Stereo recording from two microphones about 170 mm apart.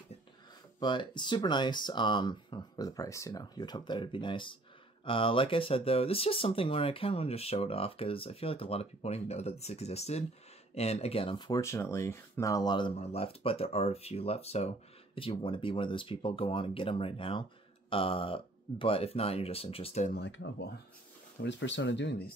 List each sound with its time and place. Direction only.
0.7 s speech: 25° left (ahead or behind)
20.2 s speech: 90° left
21.4 s speech: 90° left